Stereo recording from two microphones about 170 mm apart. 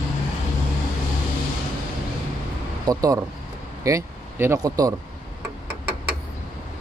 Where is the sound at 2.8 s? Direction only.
20° right (ahead or behind).